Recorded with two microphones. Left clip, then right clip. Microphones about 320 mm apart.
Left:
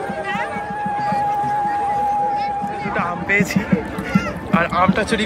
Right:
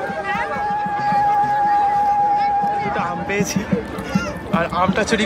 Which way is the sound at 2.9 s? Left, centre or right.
Centre.